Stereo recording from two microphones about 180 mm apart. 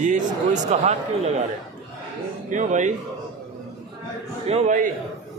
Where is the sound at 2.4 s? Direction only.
45° right (ahead or behind).